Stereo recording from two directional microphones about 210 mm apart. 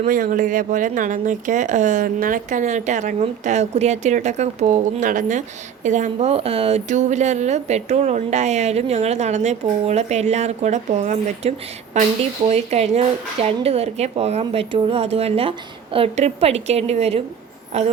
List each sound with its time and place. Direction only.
0.0 s a woman's voice: 40° right (ahead or behind)